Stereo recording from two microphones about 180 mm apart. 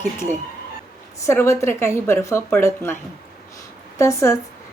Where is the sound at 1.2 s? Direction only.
15° left (ahead or behind).